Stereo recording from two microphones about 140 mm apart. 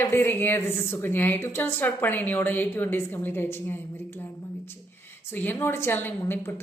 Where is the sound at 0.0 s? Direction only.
15° left (ahead or behind).